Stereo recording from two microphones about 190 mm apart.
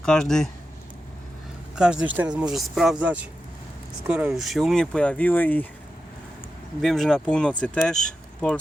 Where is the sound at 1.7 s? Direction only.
5° right (ahead or behind).